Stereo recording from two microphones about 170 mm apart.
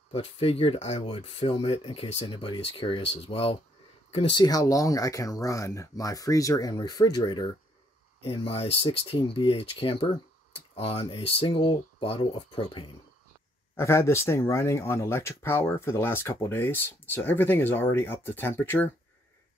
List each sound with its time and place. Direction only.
0.1 s speech: 35° left (ahead or behind)
13.7 s speech: 15° left (ahead or behind)